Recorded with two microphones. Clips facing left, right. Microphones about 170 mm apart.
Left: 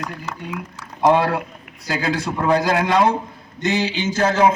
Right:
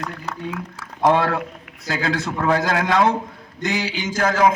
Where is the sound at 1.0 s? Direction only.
15° left (ahead or behind).